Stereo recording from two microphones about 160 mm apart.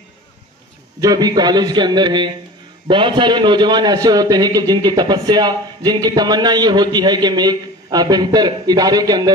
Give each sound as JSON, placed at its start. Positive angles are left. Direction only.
{"t": 1.0, "sound": "a man's voice", "side_deg": -25}